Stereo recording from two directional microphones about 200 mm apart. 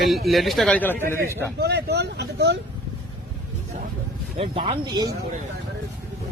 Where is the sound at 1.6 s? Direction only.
55° right (ahead or behind).